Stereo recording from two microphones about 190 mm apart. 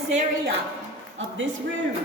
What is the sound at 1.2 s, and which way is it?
Speech, 80° right.